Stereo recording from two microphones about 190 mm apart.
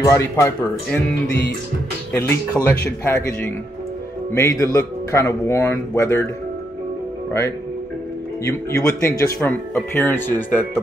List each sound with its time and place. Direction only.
0.0 s speech: 15° left (ahead or behind)
2.1 s speech: 15° left (ahead or behind)
4.3 s speech: 15° left (ahead or behind)
8.5 s speech: 15° left (ahead or behind)